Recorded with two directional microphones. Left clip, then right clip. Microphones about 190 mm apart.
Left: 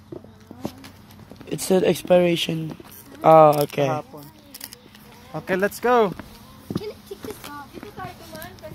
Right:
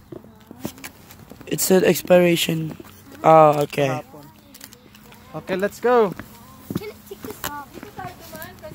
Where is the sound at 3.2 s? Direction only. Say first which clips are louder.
Even; centre (ahead or behind).